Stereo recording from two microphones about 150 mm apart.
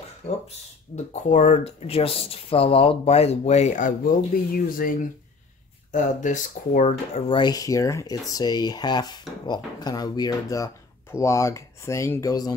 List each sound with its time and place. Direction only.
0.9 s speech: 55° left (ahead or behind)
4.6 s speech: 70° left (ahead or behind)
5.9 s speech: 55° left (ahead or behind)
7.2 s speech: 30° left (ahead or behind)